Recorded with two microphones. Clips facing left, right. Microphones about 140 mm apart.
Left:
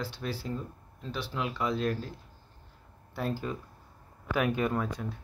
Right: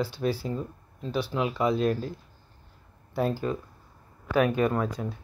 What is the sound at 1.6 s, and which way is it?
Speech, 10° right (ahead or behind).